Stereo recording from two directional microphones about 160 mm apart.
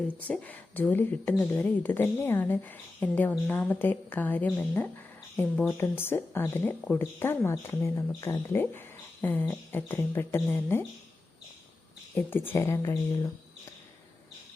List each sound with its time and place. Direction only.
0.2 s speech: 10° left (ahead or behind)
12.1 s speech: 15° left (ahead or behind)